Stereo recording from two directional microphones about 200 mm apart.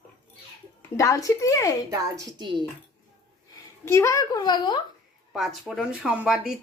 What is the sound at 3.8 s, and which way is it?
Speech, 15° left (ahead or behind).